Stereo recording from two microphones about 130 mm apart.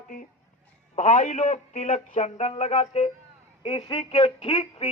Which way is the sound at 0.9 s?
60° left (ahead or behind).